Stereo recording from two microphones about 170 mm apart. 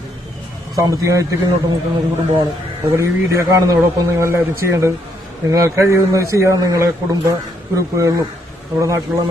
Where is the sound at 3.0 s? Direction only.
15° right (ahead or behind).